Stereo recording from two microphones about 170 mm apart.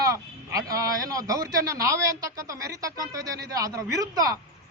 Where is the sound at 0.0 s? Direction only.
20° right (ahead or behind).